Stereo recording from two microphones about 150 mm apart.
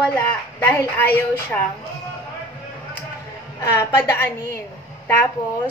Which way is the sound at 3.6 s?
20° left (ahead or behind).